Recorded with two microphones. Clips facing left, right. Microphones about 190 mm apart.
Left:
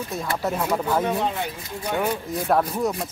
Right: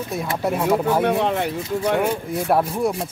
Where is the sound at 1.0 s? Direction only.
70° right (ahead or behind).